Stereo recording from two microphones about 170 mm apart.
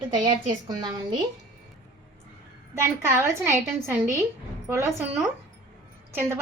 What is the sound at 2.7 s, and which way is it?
A woman's voice, 15° right (ahead or behind).